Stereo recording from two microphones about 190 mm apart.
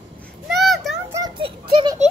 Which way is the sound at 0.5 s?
Centre (ahead or behind).